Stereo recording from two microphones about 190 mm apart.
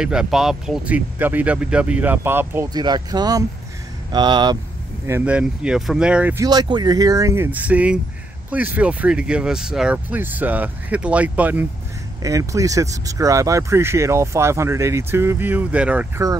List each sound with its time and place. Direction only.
0.0 s speech: 5° right (ahead or behind); by 4.6 s 20° right (ahead or behind)
5.0 s speech: 10° right (ahead or behind)